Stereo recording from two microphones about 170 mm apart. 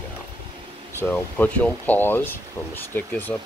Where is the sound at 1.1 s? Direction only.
10° left (ahead or behind).